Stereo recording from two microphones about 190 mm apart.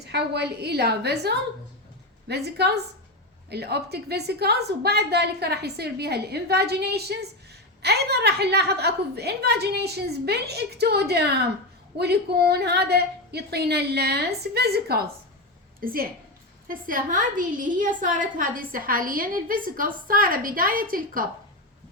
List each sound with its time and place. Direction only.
0.1 s a woman's voice: 60° right (ahead or behind)